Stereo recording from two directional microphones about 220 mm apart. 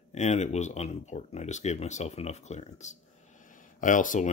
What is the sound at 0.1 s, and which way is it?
Speech, 30° left (ahead or behind).